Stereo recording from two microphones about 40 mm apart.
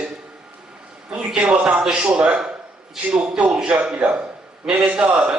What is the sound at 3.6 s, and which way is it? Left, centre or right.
A man's voice, right.